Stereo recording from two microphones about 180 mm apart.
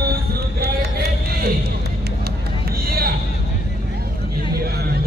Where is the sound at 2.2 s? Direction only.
60° right (ahead or behind).